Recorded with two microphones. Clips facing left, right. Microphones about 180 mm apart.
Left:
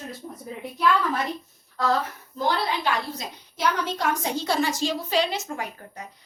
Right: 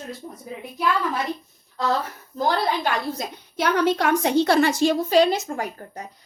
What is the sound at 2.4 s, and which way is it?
A woman's voice, 50° right (ahead or behind).